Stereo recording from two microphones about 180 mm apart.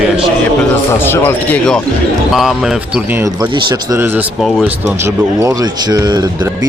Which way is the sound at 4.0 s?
10° right (ahead or behind).